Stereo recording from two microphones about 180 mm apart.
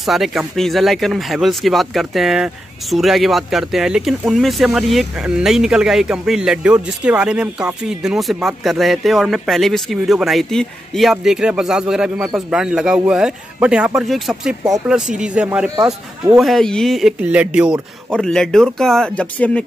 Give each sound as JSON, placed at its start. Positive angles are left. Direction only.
{"t": 0.0, "sound": "speech", "side_deg": 0}
{"t": 15.7, "sound": "speech", "side_deg": -20}
{"t": 16.3, "sound": "speech", "side_deg": 0}